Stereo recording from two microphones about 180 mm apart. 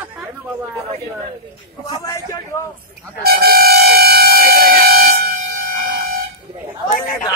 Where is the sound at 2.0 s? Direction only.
20° left (ahead or behind).